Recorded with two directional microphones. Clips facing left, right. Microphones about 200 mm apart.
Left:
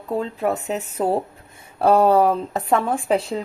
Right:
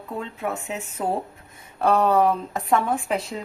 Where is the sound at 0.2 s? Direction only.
35° left (ahead or behind).